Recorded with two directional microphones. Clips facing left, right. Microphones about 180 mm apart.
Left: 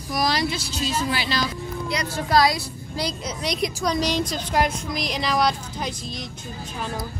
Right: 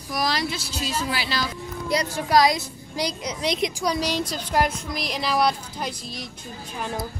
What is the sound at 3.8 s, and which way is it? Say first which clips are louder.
Speech: left 1 dB; 10° right (ahead or behind).